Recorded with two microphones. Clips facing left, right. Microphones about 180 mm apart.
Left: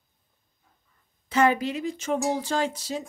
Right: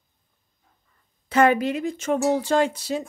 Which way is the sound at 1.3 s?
55° right (ahead or behind).